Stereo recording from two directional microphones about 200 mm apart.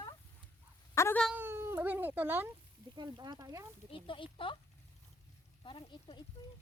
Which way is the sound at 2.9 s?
20° right (ahead or behind).